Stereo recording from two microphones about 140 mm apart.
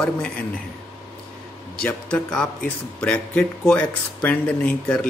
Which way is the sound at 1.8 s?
5° left (ahead or behind).